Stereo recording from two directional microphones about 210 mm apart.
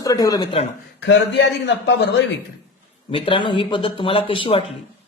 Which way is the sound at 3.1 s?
25° left (ahead or behind).